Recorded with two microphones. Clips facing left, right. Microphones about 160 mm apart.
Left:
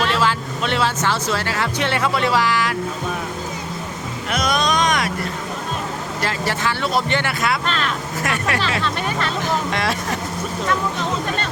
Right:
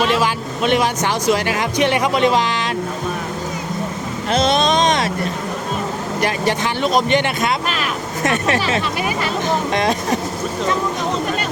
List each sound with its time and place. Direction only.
0.0 s speech: 15° right (ahead or behind)
4.3 s speech: 25° right (ahead or behind)
6.1 s speech: 20° right (ahead or behind)
8.8 s speech: 10° right (ahead or behind)
9.7 s speech: 20° right (ahead or behind)